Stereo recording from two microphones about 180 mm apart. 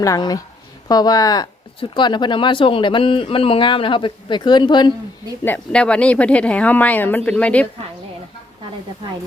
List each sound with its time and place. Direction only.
0.0 s speech: 20° left (ahead or behind)
5.5 s speech: 5° left (ahead or behind)